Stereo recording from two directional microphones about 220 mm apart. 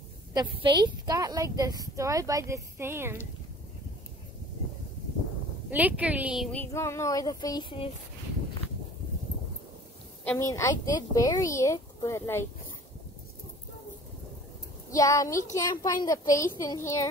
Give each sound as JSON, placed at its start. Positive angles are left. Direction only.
{"t": 0.3, "sound": "a woman's voice", "side_deg": -20}
{"t": 5.7, "sound": "a woman's voice", "side_deg": -5}
{"t": 10.2, "sound": "a woman's voice", "side_deg": 10}
{"t": 14.9, "sound": "a woman's voice", "side_deg": 15}